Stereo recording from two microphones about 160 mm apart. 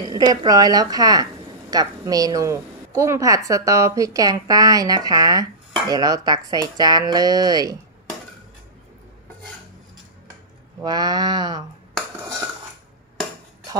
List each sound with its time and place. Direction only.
0.1 s a woman's voice: 25° right (ahead or behind)
10.8 s a woman's voice: 25° right (ahead or behind)